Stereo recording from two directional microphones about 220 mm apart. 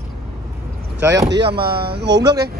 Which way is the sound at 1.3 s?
45° right (ahead or behind).